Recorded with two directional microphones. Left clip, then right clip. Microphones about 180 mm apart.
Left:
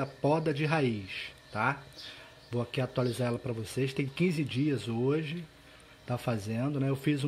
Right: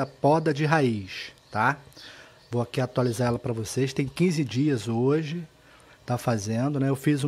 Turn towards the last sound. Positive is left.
turn(degrees=-40)  # may be behind; listen again after turning